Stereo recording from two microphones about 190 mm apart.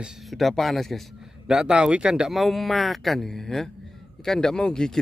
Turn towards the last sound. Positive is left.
turn(degrees=5)  # may be behind; listen again after turning